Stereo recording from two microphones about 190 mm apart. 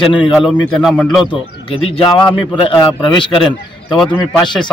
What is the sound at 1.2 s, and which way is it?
Speech, 25° left (ahead or behind).